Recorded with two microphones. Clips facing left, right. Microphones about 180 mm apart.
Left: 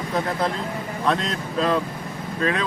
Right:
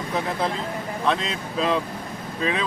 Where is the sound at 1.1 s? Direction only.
Centre (ahead or behind).